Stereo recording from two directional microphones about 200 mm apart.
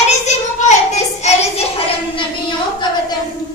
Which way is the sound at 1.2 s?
35° left (ahead or behind).